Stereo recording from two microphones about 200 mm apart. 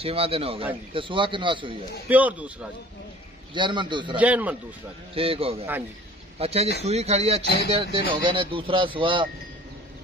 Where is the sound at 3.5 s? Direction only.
25° right (ahead or behind).